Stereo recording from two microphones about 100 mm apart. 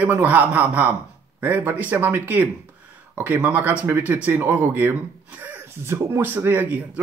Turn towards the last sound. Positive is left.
turn(degrees=-20)  # may be behind; listen again after turning